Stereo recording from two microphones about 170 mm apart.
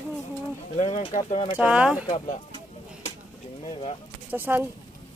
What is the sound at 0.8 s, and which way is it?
Speech, 40° left (ahead or behind).